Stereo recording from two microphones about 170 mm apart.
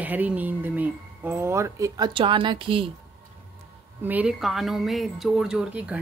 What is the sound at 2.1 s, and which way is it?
Speech, 30° right (ahead or behind).